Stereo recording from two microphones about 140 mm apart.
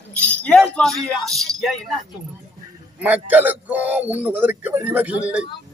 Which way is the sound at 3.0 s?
10° right (ahead or behind).